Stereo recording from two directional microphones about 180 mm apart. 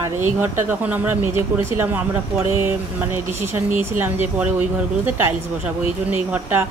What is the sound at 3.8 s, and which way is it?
Speech, 10° right (ahead or behind).